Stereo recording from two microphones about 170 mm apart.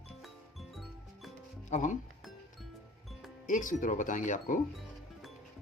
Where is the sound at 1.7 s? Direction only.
45° left (ahead or behind).